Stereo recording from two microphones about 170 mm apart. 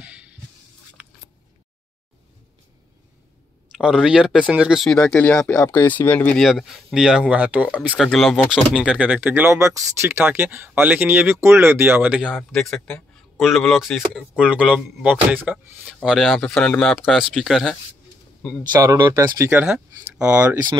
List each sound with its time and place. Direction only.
0.0 s music: 5° right (ahead or behind)
1.0 s a sound: 10° right (ahead or behind)
3.7 s speech: 5° right (ahead or behind)
8.1 s speech: centre (ahead or behind)
18.8 s speech: 20° right (ahead or behind)
20.2 s speech: 5° right (ahead or behind)